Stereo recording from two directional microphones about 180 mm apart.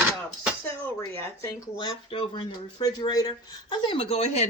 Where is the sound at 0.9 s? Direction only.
15° left (ahead or behind).